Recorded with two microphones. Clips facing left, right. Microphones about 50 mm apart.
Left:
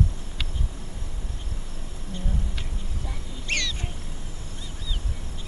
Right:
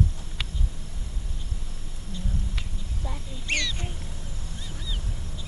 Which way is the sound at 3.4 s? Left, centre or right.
Centre.